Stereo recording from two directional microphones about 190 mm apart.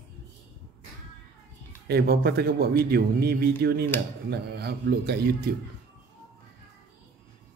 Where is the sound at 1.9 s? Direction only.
55° right (ahead or behind).